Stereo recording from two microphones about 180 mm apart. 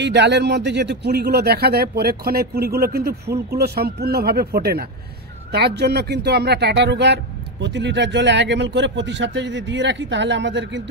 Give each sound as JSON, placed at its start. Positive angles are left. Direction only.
{"t": 0.0, "sound": "speech", "side_deg": -70}